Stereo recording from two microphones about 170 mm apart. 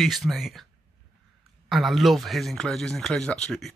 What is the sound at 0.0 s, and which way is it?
Speech, centre (ahead or behind).